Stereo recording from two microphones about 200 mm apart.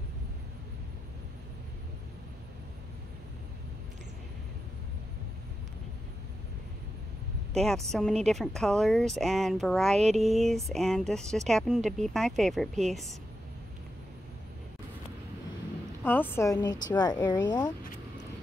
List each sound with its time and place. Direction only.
7.5 s speech: centre (ahead or behind)
16.0 s a woman's voice: 10° left (ahead or behind)